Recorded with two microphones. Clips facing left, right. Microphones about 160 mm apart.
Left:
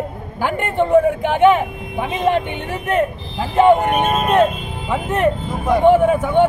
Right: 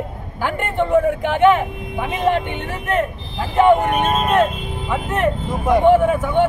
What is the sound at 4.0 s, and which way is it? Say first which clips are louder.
A man's voice: left 2 dB; 20° left (ahead or behind).